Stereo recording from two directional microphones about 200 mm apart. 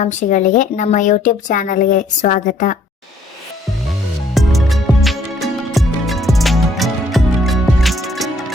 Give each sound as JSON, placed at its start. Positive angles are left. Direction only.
{"t": 0.0, "sound": "a woman's voice", "side_deg": 40}
{"t": 4.4, "sound": "music", "side_deg": 0}